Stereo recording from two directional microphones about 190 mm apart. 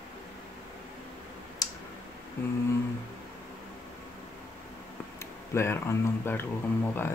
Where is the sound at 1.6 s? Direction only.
20° left (ahead or behind).